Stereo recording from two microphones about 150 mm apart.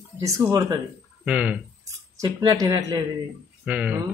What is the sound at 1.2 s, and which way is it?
Speech, 10° right (ahead or behind).